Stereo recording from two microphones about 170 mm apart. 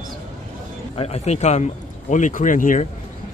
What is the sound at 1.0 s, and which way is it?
Speech, 40° left (ahead or behind).